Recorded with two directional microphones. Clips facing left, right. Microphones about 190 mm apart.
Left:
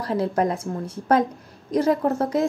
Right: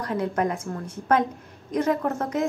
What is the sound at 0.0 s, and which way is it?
A woman's voice, 30° left (ahead or behind).